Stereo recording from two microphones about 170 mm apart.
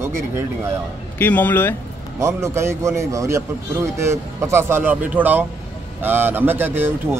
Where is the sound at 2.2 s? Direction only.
15° right (ahead or behind).